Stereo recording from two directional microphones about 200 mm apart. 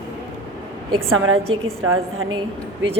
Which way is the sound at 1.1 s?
90° right.